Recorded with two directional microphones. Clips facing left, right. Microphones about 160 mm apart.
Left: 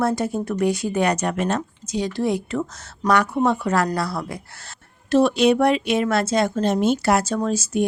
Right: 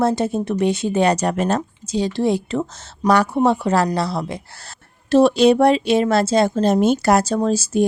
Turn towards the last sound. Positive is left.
turn(degrees=-30)  # may be behind; listen again after turning